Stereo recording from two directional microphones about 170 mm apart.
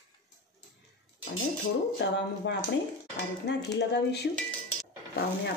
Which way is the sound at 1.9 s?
90° left.